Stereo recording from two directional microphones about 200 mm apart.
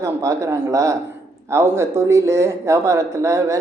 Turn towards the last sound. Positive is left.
turn(degrees=-15)  # may be behind; listen again after turning